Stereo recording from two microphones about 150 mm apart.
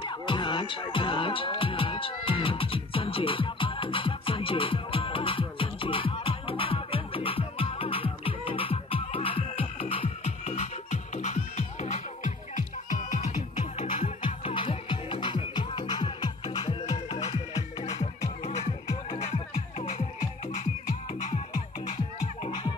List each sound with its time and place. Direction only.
0.0 s music: 35° left (ahead or behind); by 12.6 s 55° left (ahead or behind)
13.7 s music: 40° left (ahead or behind)
19.2 s music: 45° left (ahead or behind)